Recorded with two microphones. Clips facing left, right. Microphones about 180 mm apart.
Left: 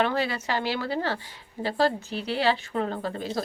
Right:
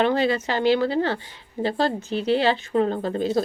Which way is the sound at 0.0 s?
25° right (ahead or behind).